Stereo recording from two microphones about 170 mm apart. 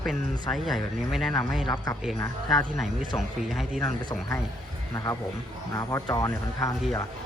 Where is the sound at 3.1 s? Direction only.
Centre (ahead or behind).